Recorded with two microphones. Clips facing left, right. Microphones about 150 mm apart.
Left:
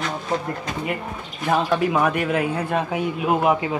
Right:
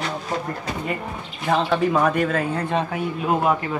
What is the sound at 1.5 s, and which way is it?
Speech, 10° left (ahead or behind).